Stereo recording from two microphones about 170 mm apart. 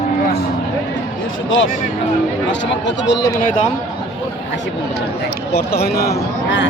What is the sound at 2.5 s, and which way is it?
Speech, 90° left.